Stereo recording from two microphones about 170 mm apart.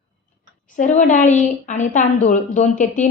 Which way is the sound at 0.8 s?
45° left (ahead or behind).